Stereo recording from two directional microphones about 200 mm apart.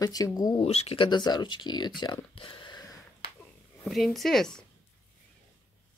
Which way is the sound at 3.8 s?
Centre (ahead or behind).